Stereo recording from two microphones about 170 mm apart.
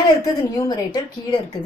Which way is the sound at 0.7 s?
25° left (ahead or behind).